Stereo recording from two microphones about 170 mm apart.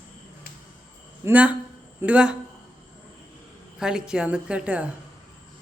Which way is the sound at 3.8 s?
5° right (ahead or behind).